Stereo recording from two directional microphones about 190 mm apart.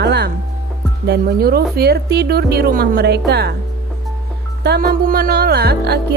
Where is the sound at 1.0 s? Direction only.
55° right (ahead or behind).